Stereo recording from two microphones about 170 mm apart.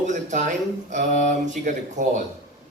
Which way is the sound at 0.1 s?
45° right (ahead or behind).